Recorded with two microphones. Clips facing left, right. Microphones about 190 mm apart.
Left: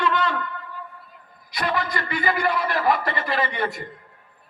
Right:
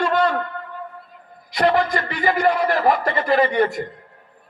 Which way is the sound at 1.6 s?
55° right (ahead or behind).